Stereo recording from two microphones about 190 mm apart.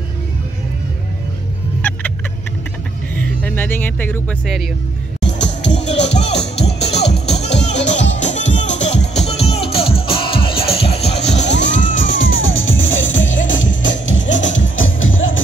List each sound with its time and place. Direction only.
1.8 s vehicle: 10° left (ahead or behind)
3.2 s music: 10° left (ahead or behind)
5.2 s music: 70° left (ahead or behind)
8.3 s music: 40° left (ahead or behind)
11.3 s music: 70° left (ahead or behind)
11.8 s music: 80° left